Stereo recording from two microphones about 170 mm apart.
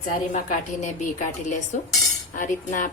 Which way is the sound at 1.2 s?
50° left (ahead or behind).